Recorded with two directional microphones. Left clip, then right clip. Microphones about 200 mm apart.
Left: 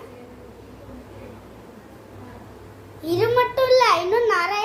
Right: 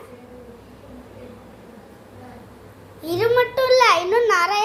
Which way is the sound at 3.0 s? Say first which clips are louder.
Right 1 dB; 20° right (ahead or behind).